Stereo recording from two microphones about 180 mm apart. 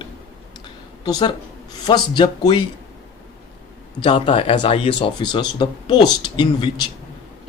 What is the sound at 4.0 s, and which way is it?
Speech, 25° left (ahead or behind).